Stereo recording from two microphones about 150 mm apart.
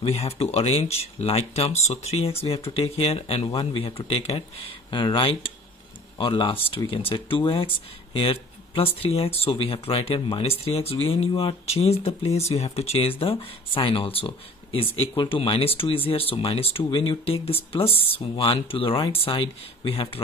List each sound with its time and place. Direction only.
0.0 s speech: 40° left (ahead or behind)